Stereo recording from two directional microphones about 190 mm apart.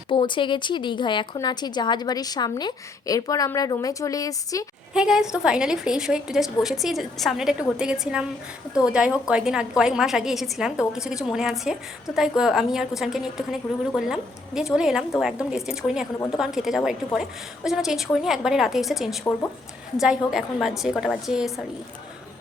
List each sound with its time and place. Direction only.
0.1 s a woman's voice: 25° left (ahead or behind)
4.9 s a woman's voice: 5° right (ahead or behind)
16.1 s a woman's voice: 15° left (ahead or behind)
16.4 s a woman's voice: centre (ahead or behind)